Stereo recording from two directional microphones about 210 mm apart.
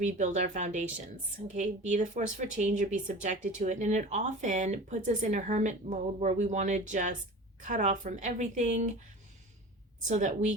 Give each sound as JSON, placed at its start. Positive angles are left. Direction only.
{"t": 0.0, "sound": "speech", "side_deg": -35}
{"t": 10.1, "sound": "speech", "side_deg": -35}